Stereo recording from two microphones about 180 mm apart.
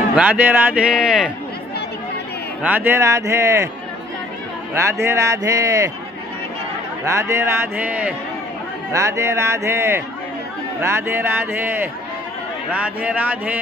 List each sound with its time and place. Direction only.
0.1 s speech: 10° right (ahead or behind)
2.6 s speech: 10° right (ahead or behind)
4.7 s speech: 15° right (ahead or behind)
7.1 s speech: 15° right (ahead or behind)